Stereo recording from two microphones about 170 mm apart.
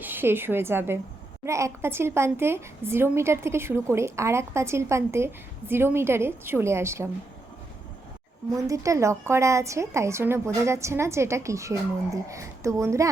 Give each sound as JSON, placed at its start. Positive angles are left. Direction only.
{"t": 0.0, "sound": "a woman's voice", "side_deg": -10}
{"t": 8.5, "sound": "a woman's voice", "side_deg": -20}